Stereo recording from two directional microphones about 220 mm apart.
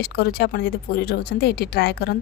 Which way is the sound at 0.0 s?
45° left (ahead or behind).